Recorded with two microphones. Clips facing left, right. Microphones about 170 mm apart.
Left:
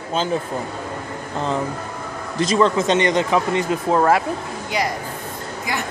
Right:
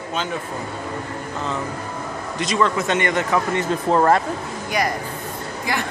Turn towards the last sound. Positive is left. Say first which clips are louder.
# even
turn(degrees=5)  # may be behind; listen again after turning